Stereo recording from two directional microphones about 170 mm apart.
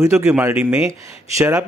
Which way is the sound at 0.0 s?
15° right (ahead or behind).